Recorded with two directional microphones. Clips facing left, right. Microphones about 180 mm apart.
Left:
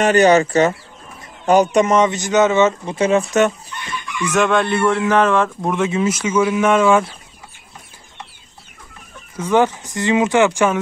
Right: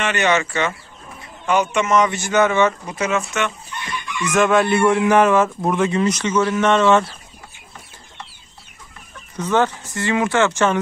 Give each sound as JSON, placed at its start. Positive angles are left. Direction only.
{"t": 0.0, "sound": "speech", "side_deg": 35}
{"t": 2.0, "sound": "speech", "side_deg": 20}
{"t": 4.3, "sound": "speech", "side_deg": -5}
{"t": 9.4, "sound": "speech", "side_deg": 15}